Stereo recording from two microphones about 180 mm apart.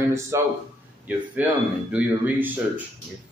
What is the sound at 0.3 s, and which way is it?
Speech, 15° right (ahead or behind).